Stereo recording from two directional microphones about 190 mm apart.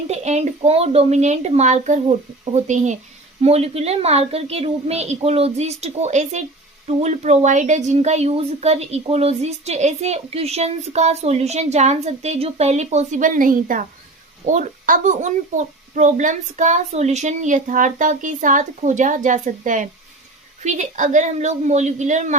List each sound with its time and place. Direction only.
0.1 s speech: 35° right (ahead or behind)